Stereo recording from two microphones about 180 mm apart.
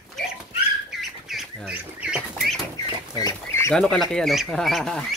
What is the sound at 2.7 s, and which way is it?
Speech, 20° left (ahead or behind).